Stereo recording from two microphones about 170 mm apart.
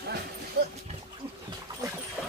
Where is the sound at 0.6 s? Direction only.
65° right (ahead or behind).